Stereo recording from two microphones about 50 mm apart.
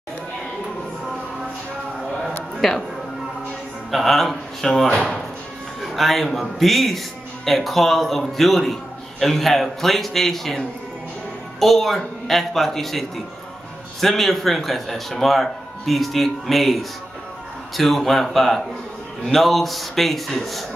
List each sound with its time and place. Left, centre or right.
2.6 s speech: centre
3.9 s a man's voice: centre
11.6 s speech: centre